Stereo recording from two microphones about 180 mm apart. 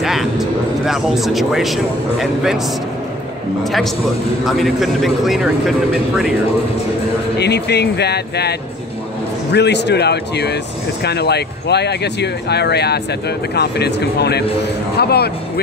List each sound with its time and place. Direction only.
0.0 s speech: centre (ahead or behind)
4.5 s a man's voice: centre (ahead or behind)
7.3 s speech: 65° left (ahead or behind)